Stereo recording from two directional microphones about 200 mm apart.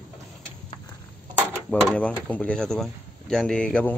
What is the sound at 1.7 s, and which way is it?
Speech, 5° left (ahead or behind).